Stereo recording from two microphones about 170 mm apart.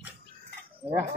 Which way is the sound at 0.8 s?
30° right (ahead or behind).